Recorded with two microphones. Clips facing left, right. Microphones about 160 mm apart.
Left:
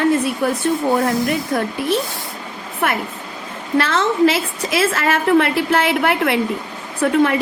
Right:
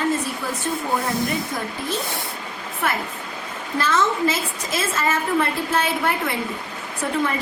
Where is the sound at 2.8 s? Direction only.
65° left (ahead or behind).